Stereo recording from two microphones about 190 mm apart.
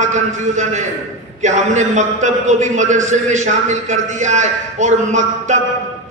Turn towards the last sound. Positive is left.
turn(degrees=-40)  # may be behind; listen again after turning